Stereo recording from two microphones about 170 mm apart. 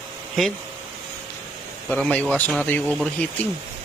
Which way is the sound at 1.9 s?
5° left (ahead or behind).